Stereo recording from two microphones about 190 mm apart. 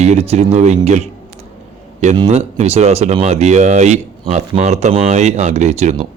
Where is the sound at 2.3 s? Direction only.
35° right (ahead or behind).